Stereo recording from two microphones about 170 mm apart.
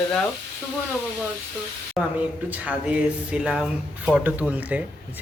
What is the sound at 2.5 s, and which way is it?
Speech, 10° right (ahead or behind).